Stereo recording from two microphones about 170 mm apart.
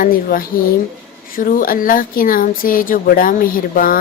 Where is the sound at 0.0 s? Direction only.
55° left (ahead or behind).